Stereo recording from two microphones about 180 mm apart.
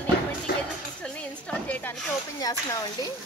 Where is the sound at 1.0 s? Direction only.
5° left (ahead or behind).